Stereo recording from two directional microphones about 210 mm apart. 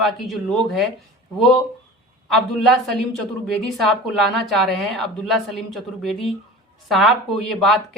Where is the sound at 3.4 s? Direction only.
Centre (ahead or behind).